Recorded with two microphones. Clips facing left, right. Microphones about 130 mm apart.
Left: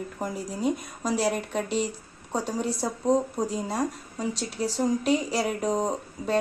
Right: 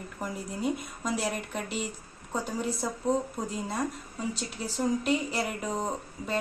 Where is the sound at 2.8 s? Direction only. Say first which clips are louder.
Left 5 dB; 35° left (ahead or behind).